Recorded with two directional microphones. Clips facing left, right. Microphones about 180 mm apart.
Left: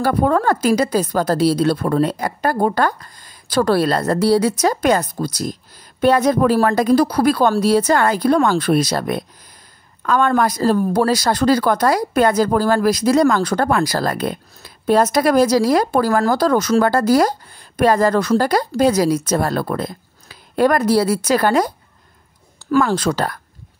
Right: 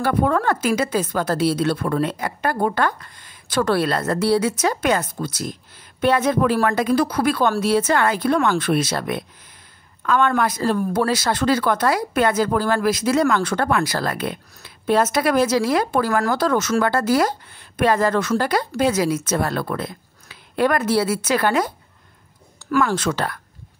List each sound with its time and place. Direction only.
0.0 s speech: 40° left (ahead or behind)